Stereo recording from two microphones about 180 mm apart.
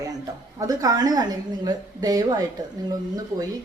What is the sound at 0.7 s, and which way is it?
A woman's voice, 20° right (ahead or behind).